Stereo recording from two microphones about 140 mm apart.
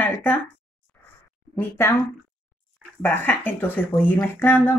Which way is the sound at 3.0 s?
15° left (ahead or behind).